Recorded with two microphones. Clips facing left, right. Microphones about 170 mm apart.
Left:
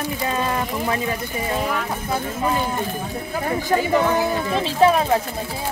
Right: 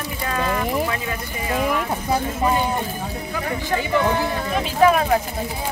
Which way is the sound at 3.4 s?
35° left (ahead or behind).